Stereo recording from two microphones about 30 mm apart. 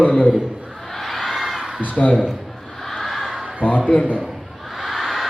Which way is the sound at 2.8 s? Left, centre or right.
Centre.